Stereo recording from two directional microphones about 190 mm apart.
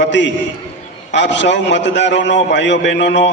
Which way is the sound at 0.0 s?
70° left (ahead or behind).